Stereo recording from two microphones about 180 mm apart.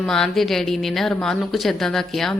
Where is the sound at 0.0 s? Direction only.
5° left (ahead or behind).